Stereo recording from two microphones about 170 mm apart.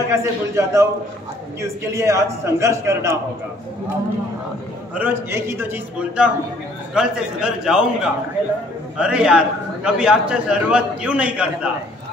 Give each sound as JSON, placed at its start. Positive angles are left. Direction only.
{"t": 0.1, "sound": "a man's voice", "side_deg": -15}
{"t": 4.9, "sound": "a man's voice", "side_deg": -15}